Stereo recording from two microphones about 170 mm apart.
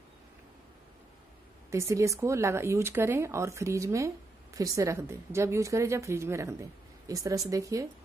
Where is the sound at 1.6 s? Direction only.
15° right (ahead or behind).